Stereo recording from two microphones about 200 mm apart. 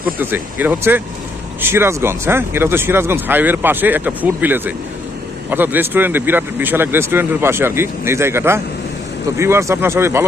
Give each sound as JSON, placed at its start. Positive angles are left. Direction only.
{"t": 0.2, "sound": "speech", "side_deg": -10}